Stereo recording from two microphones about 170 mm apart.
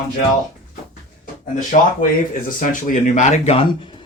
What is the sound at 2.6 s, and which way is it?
Speech, 50° left (ahead or behind).